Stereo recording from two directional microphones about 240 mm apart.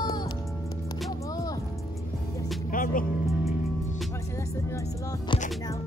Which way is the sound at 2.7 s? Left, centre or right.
Left.